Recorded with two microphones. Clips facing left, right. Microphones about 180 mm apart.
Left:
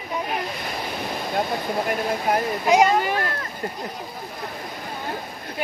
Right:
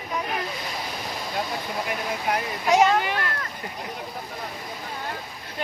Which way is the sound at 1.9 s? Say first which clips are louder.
Left 4 dB; 45° left (ahead or behind).